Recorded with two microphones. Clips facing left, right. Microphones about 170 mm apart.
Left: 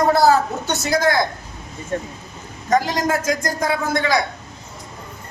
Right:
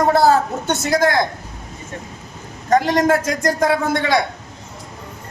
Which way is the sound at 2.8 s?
60° right (ahead or behind).